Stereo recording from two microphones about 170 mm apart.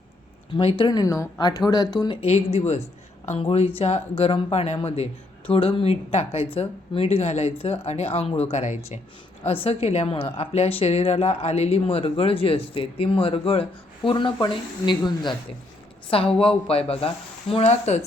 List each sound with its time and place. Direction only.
0.5 s speech: 30° left (ahead or behind)
2.2 s a woman's voice: 35° left (ahead or behind)